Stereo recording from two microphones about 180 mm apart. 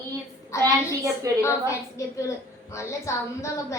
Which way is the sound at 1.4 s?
15° left (ahead or behind).